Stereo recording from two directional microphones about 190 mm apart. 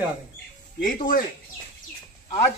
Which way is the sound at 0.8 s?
45° left (ahead or behind).